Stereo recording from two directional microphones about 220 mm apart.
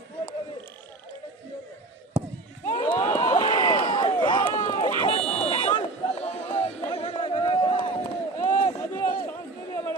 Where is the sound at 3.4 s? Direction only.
20° left (ahead or behind).